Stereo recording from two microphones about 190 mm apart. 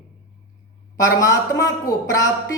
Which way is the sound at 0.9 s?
20° left (ahead or behind).